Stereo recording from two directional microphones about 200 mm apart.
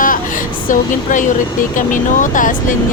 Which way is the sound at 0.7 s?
40° left (ahead or behind).